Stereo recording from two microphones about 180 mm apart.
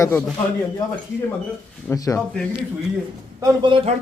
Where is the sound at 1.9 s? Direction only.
15° left (ahead or behind).